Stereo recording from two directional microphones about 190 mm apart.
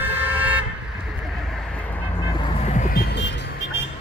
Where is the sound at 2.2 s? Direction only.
25° left (ahead or behind); by 3.0 s 40° left (ahead or behind).